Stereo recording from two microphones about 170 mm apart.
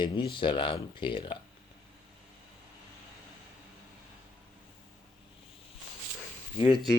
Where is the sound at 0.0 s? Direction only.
30° left (ahead or behind).